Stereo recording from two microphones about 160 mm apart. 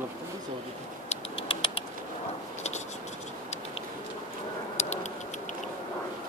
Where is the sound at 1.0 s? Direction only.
35° left (ahead or behind).